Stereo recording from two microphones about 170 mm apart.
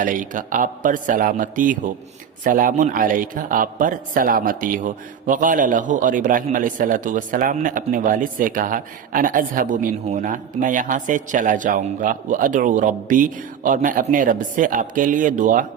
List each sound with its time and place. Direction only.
0.0 s a man's voice: 50° right (ahead or behind)